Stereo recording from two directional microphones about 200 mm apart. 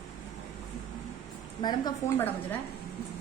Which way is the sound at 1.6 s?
15° left (ahead or behind).